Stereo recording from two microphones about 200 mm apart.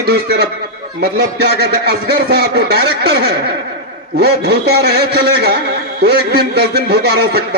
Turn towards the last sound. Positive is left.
turn(degrees=-55)  # may be behind; listen again after turning